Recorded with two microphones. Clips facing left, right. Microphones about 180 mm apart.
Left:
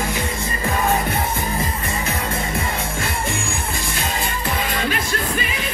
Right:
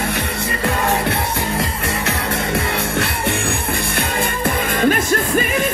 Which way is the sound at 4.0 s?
50° right (ahead or behind).